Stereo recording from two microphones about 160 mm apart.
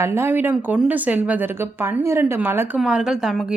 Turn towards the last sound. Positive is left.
turn(degrees=0)  # may be behind; listen again after turning